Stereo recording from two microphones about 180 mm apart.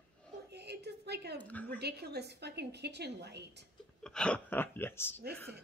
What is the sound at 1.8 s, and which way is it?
A woman's voice, 65° right (ahead or behind).